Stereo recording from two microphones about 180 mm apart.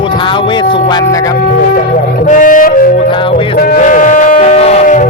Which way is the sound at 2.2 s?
45° left (ahead or behind).